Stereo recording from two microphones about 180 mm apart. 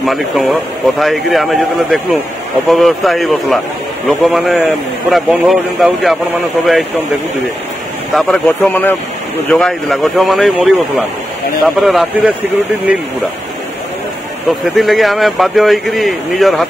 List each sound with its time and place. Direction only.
0.0 s speech: centre (ahead or behind)
8.1 s speech: centre (ahead or behind)
14.8 s speech: centre (ahead or behind)